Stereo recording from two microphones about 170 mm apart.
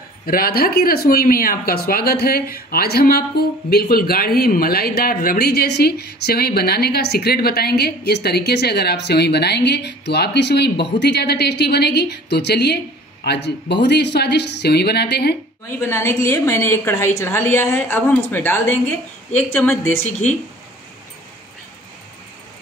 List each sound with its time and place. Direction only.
0.3 s speech: 60° left (ahead or behind)
15.8 s a woman's voice: 15° left (ahead or behind)